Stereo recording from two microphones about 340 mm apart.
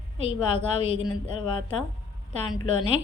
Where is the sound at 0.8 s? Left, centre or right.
Centre.